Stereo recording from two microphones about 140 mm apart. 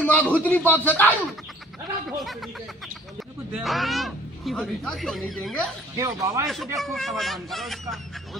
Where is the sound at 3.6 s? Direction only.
Centre (ahead or behind).